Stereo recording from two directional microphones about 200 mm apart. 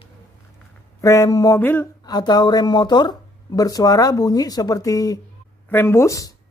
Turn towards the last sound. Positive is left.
turn(degrees=15)  # may be behind; listen again after turning